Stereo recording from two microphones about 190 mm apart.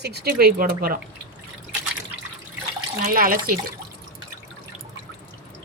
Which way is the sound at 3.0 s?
50° right (ahead or behind).